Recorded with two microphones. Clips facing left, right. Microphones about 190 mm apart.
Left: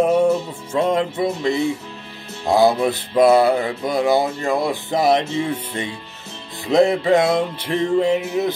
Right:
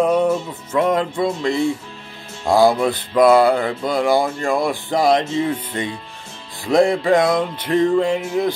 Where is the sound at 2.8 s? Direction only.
25° left (ahead or behind).